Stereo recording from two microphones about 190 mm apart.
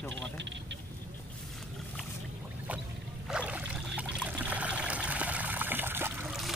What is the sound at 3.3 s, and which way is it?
Trickle, 5° right (ahead or behind).